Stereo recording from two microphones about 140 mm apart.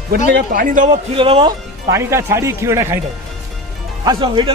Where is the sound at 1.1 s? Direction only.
40° right (ahead or behind).